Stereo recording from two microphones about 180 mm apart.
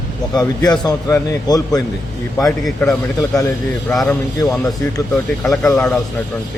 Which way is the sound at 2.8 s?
20° left (ahead or behind).